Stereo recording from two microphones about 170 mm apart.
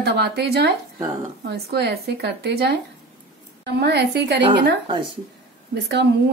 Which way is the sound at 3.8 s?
75° right (ahead or behind).